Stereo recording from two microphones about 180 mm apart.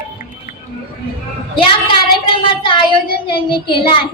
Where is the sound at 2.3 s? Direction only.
30° left (ahead or behind).